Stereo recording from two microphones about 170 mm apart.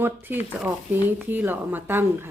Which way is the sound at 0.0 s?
10° right (ahead or behind).